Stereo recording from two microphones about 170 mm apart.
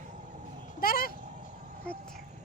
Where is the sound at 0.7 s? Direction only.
60° left (ahead or behind).